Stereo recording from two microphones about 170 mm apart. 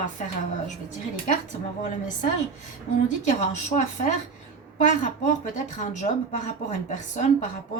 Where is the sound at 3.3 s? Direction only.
45° left (ahead or behind).